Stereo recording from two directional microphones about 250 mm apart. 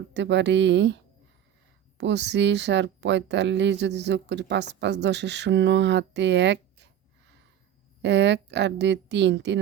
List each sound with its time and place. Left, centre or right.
0.1 s speech: right
2.0 s speech: right
8.0 s speech: right